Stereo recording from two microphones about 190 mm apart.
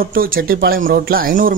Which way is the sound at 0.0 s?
50° right (ahead or behind).